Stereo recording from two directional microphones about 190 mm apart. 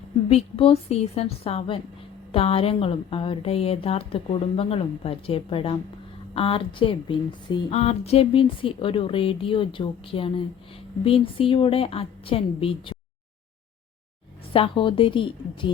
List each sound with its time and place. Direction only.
0.3 s a woman's voice: 30° left (ahead or behind)
14.5 s speech: 25° left (ahead or behind)